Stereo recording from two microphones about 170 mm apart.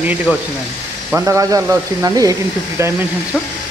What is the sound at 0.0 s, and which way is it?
Speech, 10° right (ahead or behind).